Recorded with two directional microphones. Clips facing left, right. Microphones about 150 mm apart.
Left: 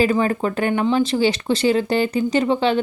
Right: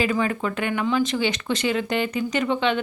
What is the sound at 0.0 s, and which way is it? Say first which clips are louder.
Speech: left 5 dB; 40° left (ahead or behind).